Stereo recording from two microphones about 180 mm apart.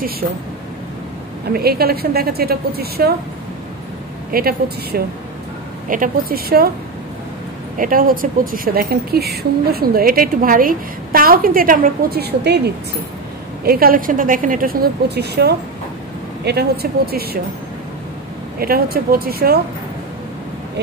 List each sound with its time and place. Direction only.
1.5 s a woman's voice: 60° right (ahead or behind)
4.3 s a woman's voice: 55° right (ahead or behind)
7.7 s speech: 50° right (ahead or behind); by 12.7 s 65° right (ahead or behind)
13.7 s a woman's voice: 55° right (ahead or behind)
18.6 s a woman's voice: 55° right (ahead or behind)